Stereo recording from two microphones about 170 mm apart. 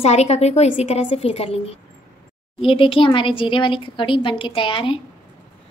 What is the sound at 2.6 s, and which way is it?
A woman's voice, 30° left (ahead or behind).